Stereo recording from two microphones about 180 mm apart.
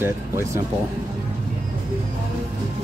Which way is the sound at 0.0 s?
15° right (ahead or behind).